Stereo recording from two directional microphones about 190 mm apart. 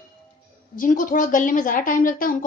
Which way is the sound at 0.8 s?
45° left (ahead or behind).